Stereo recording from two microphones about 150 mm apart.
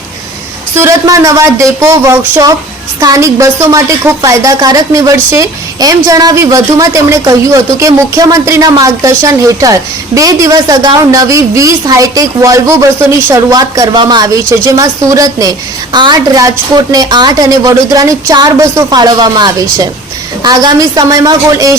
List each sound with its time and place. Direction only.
0.8 s a woman's voice: 20° right (ahead or behind)